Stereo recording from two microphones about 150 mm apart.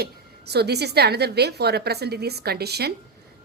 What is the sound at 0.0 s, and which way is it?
A woman's voice, 90° right.